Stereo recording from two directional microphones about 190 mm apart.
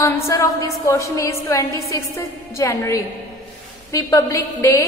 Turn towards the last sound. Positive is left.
turn(degrees=15)  # may be behind; listen again after turning